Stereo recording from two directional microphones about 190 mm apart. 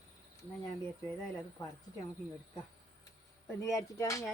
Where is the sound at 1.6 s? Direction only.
20° left (ahead or behind).